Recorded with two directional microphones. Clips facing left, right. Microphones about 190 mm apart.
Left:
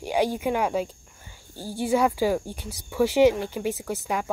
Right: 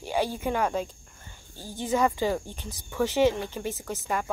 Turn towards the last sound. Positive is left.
turn(degrees=10)  # may be behind; listen again after turning